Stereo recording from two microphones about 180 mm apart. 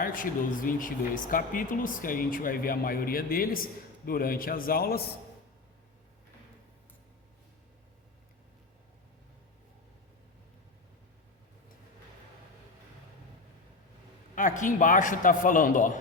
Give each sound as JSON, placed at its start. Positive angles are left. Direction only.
{"t": 0.0, "sound": "speech", "side_deg": 50}
{"t": 14.3, "sound": "speech", "side_deg": 45}